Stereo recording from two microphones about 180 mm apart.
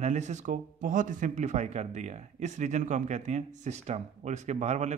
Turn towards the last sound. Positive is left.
turn(degrees=-40)  # may be behind; listen again after turning